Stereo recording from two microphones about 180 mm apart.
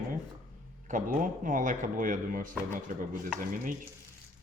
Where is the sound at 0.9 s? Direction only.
45° right (ahead or behind).